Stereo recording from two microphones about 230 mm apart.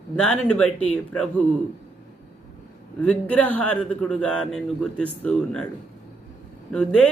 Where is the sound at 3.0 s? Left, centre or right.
Centre.